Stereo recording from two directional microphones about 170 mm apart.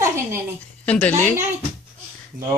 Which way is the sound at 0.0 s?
15° right (ahead or behind).